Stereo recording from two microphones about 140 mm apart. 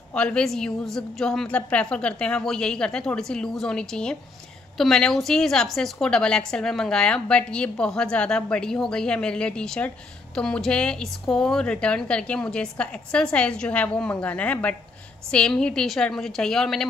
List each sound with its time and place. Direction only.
0.1 s a woman's voice: 5° left (ahead or behind)